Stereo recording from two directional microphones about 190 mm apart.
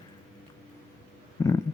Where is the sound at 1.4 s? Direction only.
15° left (ahead or behind).